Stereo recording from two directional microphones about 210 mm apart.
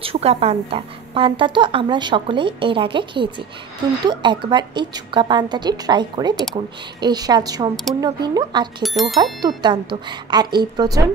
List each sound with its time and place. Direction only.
0.0 s a woman's voice: 25° right (ahead or behind)
8.8 s speech: centre (ahead or behind)
9.6 s a woman's voice: 20° right (ahead or behind)